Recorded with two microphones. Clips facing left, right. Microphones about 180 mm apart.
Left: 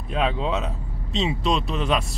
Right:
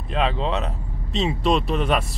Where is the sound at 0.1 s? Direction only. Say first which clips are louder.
Right 1 dB; 5° left (ahead or behind).